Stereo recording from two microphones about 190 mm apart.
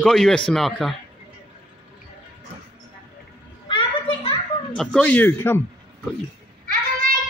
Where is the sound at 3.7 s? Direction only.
25° left (ahead or behind).